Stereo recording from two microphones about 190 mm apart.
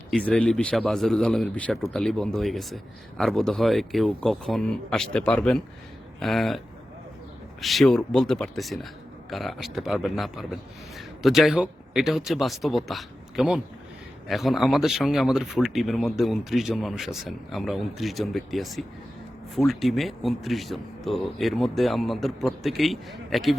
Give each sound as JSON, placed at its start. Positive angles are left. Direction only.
{"t": 0.3, "sound": "a man's voice", "side_deg": 5}
{"t": 7.6, "sound": "a man's voice", "side_deg": 0}